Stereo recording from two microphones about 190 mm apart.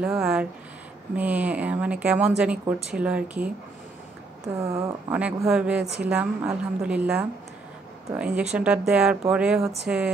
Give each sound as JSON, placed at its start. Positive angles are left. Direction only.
{"t": 0.0, "sound": "speech", "side_deg": -5}
{"t": 4.6, "sound": "speech", "side_deg": -15}
{"t": 5.1, "sound": "speech", "side_deg": -5}